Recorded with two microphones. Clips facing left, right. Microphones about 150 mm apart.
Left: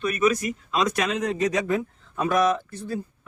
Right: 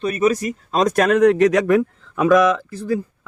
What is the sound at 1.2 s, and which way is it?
Speech, 75° right (ahead or behind).